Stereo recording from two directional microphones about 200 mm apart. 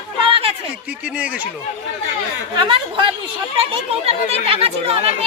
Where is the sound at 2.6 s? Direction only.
25° right (ahead or behind).